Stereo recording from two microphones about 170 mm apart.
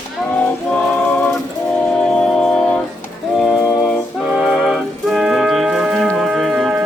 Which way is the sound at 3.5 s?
20° left (ahead or behind).